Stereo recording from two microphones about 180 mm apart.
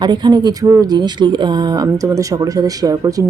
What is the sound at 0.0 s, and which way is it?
Speech, 25° right (ahead or behind).